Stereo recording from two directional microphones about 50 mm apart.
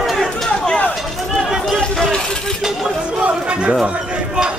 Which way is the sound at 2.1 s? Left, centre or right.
Centre.